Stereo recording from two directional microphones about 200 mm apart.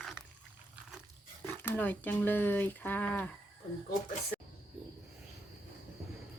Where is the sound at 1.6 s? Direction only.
10° left (ahead or behind).